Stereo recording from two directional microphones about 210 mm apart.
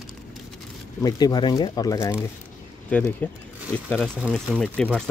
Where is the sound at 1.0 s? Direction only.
20° left (ahead or behind).